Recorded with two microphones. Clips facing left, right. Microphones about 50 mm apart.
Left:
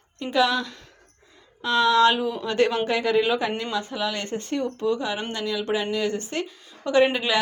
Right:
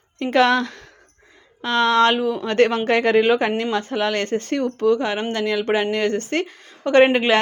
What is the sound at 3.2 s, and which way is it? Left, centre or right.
Speech, right.